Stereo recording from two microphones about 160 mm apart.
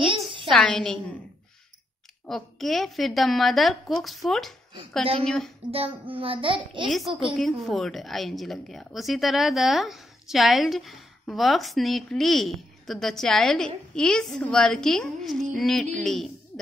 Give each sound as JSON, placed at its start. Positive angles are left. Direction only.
{"t": 0.5, "sound": "a woman's voice", "side_deg": 5}
{"t": 2.2, "sound": "a woman's voice", "side_deg": 0}
{"t": 5.7, "sound": "a child's voice", "side_deg": -35}
{"t": 6.9, "sound": "a woman's voice", "side_deg": 0}